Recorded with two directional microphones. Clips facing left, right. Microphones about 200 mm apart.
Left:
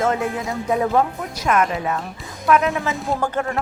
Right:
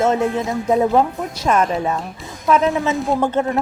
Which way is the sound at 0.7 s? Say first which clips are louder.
Right 3 dB; 25° right (ahead or behind).